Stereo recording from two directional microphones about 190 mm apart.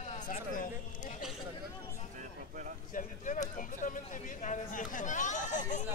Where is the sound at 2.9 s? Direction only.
40° left (ahead or behind).